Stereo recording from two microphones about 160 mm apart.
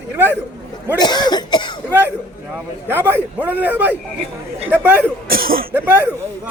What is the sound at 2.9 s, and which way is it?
A man's voice, 15° right (ahead or behind).